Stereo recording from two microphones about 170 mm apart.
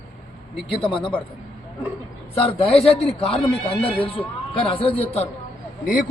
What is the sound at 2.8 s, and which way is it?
Speech, 35° left (ahead or behind).